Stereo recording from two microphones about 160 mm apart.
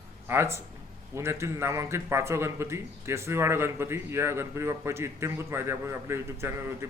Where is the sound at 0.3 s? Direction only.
15° right (ahead or behind).